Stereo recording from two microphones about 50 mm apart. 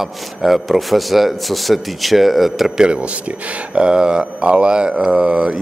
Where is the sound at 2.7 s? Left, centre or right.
Right.